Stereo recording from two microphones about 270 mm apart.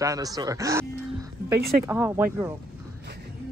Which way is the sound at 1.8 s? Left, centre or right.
Centre.